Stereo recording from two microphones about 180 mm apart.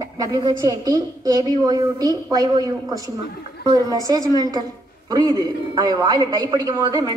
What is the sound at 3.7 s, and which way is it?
A man's voice, 20° right (ahead or behind).